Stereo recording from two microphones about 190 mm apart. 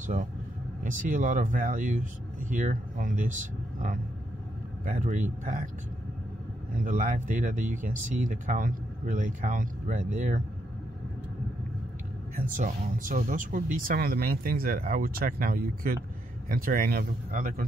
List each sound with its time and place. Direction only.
0.0 s speech: 40° right (ahead or behind)
6.7 s speech: 45° right (ahead or behind)
12.4 s speech: 45° right (ahead or behind)